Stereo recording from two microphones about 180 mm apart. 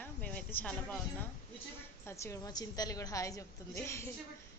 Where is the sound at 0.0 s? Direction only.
10° left (ahead or behind).